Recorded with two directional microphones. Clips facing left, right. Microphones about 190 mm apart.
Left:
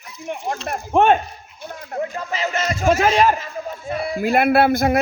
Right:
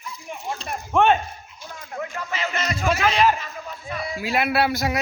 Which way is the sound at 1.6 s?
55° left (ahead or behind).